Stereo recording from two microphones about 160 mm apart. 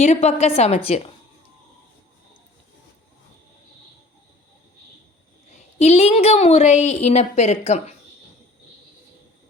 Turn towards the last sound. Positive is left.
turn(degrees=45)  # may be behind; listen again after turning